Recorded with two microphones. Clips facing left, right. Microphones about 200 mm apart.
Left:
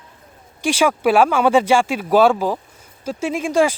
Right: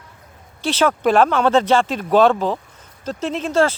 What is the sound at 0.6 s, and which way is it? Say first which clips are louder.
Speech: left 1 dB; 10° left (ahead or behind).